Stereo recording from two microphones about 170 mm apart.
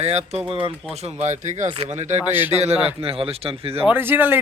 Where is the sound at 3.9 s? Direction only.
10° right (ahead or behind).